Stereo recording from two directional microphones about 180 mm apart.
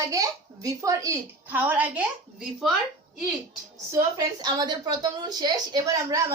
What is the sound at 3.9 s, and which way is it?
A woman's voice, 20° right (ahead or behind).